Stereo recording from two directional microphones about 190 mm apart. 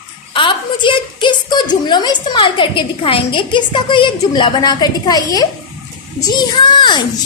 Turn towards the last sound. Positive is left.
turn(degrees=25)  # may be behind; listen again after turning